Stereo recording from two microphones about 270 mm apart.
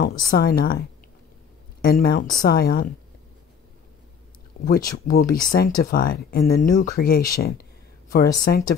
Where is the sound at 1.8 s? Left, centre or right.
Left.